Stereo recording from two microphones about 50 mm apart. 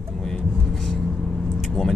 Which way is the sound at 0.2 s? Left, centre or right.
Centre.